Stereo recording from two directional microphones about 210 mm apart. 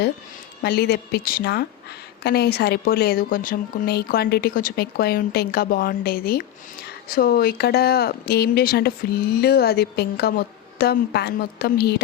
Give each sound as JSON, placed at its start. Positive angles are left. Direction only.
{"t": 0.6, "sound": "a woman's voice", "side_deg": 50}